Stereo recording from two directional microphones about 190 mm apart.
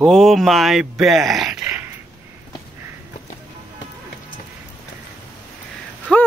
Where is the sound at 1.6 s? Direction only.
10° right (ahead or behind).